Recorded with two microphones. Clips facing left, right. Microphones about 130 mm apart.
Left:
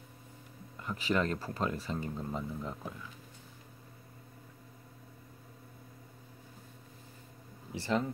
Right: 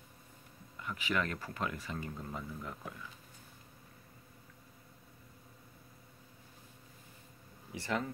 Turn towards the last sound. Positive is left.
turn(degrees=30)  # may be behind; listen again after turning